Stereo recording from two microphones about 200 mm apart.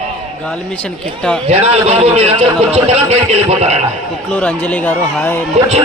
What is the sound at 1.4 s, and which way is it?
A man's voice, 30° right (ahead or behind).